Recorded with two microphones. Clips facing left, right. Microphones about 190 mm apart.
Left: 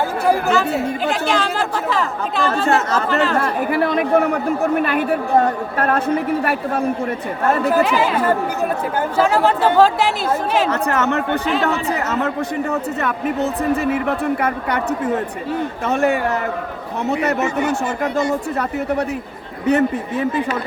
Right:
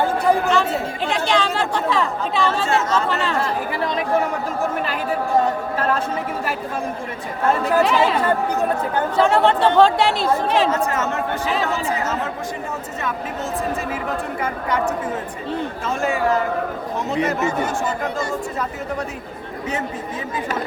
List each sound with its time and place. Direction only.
1.0 s speech: 5° left (ahead or behind)
3.3 s speech: 60° left (ahead or behind)
7.8 s speech: centre (ahead or behind)
10.7 s speech: 65° left (ahead or behind)
15.9 s speech: 65° left (ahead or behind)
19.6 s speech: 65° left (ahead or behind)